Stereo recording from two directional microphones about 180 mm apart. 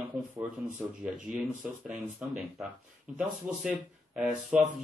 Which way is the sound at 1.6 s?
5° right (ahead or behind).